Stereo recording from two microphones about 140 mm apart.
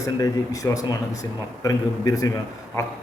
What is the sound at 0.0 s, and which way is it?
A man's voice, 25° left (ahead or behind).